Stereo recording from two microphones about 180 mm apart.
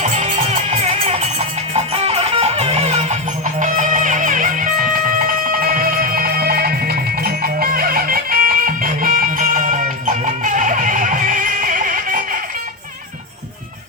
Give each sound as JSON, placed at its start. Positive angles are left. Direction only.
{"t": 0.0, "sound": "music", "side_deg": -40}